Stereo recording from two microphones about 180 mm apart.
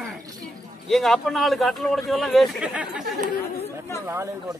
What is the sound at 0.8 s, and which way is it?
A man's voice, centre (ahead or behind).